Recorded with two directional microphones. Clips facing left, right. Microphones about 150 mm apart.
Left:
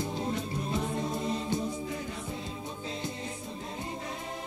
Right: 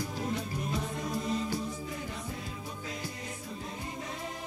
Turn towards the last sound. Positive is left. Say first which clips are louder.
# left 3 dB
turn(degrees=25)  # may be behind; listen again after turning